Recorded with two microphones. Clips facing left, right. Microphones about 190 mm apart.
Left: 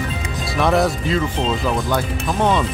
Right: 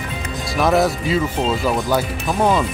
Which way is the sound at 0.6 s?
5° right (ahead or behind).